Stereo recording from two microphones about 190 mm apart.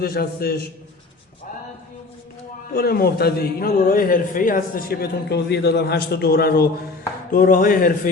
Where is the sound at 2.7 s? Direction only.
55° left (ahead or behind).